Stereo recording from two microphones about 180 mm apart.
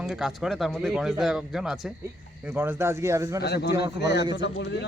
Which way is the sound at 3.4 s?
65° left (ahead or behind).